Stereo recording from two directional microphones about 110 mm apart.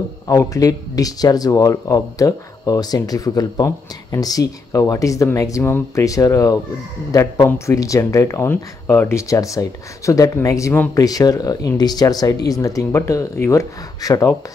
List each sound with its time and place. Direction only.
0.3 s speech: 30° left (ahead or behind)